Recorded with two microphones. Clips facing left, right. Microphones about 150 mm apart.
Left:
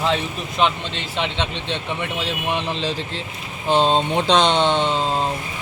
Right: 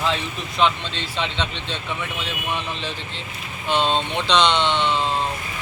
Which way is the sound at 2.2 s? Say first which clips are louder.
Left 4 dB; 30° left (ahead or behind).